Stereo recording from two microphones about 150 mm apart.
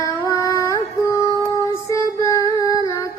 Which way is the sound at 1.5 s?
20° left (ahead or behind).